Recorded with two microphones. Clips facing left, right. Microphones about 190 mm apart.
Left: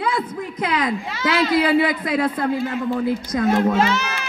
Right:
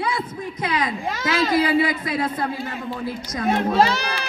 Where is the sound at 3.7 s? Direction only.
35° right (ahead or behind).